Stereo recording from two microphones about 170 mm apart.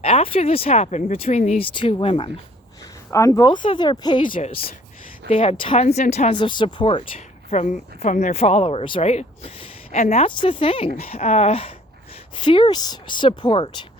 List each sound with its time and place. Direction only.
0.0 s speech: 35° left (ahead or behind)
1.6 s speech: 30° left (ahead or behind)
3.1 s speech: 20° left (ahead or behind)
5.3 s speech: 35° left (ahead or behind)
6.3 s speech: 25° left (ahead or behind)
7.5 s speech: 40° left (ahead or behind)